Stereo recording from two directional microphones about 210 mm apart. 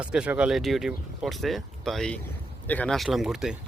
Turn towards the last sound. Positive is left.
turn(degrees=0)  # may be behind; listen again after turning